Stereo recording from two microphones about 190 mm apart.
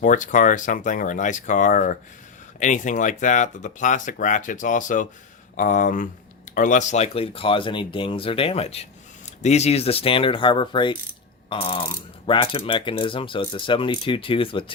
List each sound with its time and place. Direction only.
0.0 s speech: 40° left (ahead or behind)